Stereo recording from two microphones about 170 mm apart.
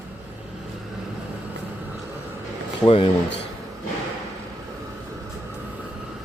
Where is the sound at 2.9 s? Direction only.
35° left (ahead or behind).